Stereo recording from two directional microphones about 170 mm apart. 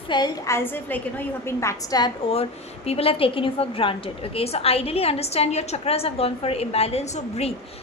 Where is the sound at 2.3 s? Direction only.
35° left (ahead or behind).